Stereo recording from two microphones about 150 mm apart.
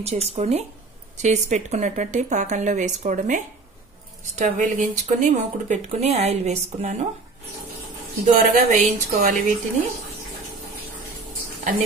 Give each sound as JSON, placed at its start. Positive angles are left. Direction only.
{"t": 0.0, "sound": "speech", "side_deg": -45}
{"t": 8.3, "sound": "a woman's voice", "side_deg": -65}